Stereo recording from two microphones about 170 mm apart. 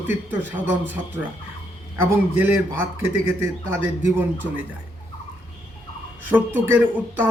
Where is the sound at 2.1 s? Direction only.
10° right (ahead or behind).